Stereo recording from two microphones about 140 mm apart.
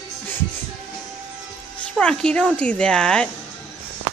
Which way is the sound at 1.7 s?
10° left (ahead or behind).